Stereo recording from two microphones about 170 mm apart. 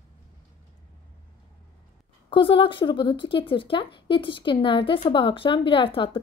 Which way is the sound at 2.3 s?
30° left (ahead or behind).